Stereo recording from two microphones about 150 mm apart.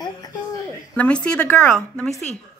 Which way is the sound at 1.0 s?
5° left (ahead or behind).